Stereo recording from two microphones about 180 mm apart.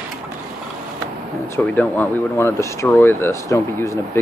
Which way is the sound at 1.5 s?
10° left (ahead or behind).